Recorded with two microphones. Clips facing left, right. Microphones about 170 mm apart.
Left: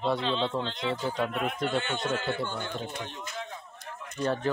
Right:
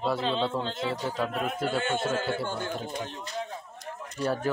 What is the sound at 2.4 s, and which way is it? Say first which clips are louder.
Speech: right 2 dB; 40° right (ahead or behind).